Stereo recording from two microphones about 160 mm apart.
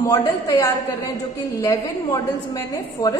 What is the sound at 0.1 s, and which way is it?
Speech, 20° left (ahead or behind).